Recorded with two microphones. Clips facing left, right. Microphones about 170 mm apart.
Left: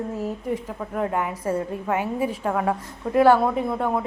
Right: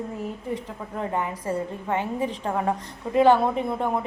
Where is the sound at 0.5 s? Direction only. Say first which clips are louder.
Left 4 dB; 10° left (ahead or behind).